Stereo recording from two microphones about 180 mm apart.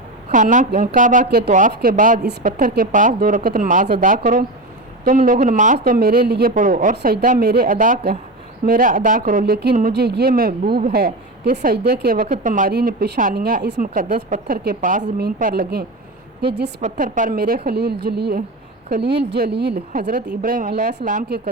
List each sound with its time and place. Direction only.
0.3 s speech: 45° right (ahead or behind); by 6.5 s 60° right (ahead or behind)
6.5 s speech: 45° right (ahead or behind)
12.7 s speech: 60° right (ahead or behind)
13.7 s speech: 50° right (ahead or behind)
16.8 s speech: 45° right (ahead or behind); by 19.7 s 65° right (ahead or behind)
19.9 s speech: 50° right (ahead or behind)